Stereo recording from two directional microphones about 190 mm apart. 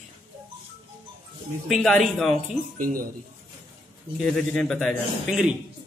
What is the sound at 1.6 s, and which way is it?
Speech, centre (ahead or behind).